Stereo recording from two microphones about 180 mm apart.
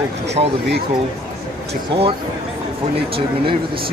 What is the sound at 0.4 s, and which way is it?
Speech, 30° right (ahead or behind).